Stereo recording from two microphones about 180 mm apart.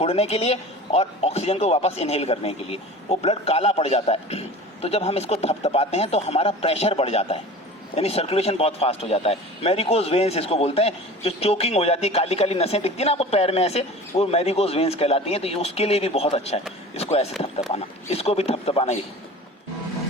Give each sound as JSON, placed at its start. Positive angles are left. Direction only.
{"t": 0.0, "sound": "speech", "side_deg": 35}